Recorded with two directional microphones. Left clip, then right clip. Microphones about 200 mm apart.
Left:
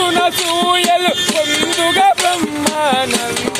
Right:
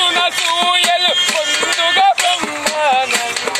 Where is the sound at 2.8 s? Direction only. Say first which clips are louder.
Right 2 dB; 15° left (ahead or behind).